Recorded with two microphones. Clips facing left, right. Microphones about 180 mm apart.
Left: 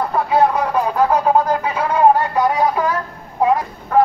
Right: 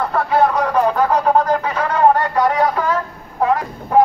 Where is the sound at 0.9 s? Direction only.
5° left (ahead or behind).